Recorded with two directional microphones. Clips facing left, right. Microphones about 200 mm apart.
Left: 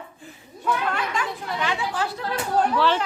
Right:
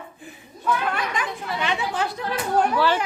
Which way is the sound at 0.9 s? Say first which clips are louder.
Even; 15° right (ahead or behind).